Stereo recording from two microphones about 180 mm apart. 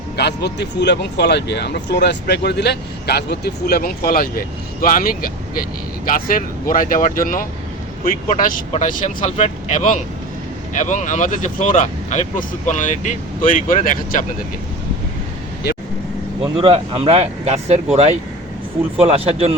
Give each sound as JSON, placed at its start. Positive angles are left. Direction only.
{"t": 0.2, "sound": "a man's voice", "side_deg": 70}
{"t": 8.7, "sound": "speech", "side_deg": 40}
{"t": 16.4, "sound": "speech", "side_deg": -30}